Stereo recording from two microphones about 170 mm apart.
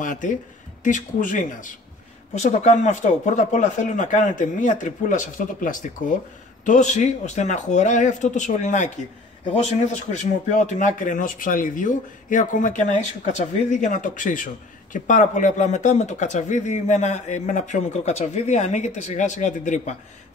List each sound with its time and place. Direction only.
0.0 s speech: 50° left (ahead or behind)